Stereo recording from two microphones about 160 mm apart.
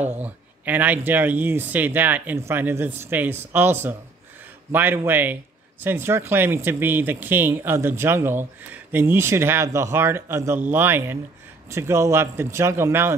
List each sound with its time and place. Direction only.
0.1 s speech: 10° right (ahead or behind)